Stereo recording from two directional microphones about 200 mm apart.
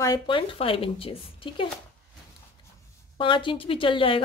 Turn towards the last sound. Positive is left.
turn(degrees=25)  # may be behind; listen again after turning